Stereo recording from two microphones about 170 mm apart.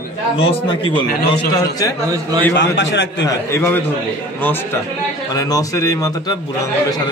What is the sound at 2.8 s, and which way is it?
Speech, 90° left.